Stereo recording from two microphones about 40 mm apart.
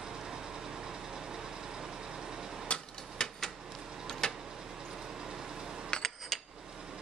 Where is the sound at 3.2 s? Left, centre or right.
Centre.